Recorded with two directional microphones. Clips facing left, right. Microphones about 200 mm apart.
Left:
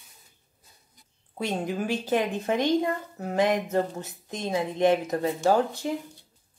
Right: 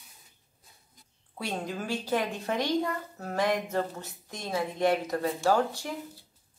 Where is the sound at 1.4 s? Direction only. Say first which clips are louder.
Left 5 dB; 20° left (ahead or behind).